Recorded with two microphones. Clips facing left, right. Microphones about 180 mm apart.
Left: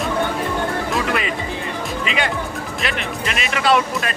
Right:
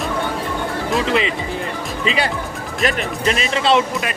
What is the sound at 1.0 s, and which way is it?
Speech, 25° right (ahead or behind).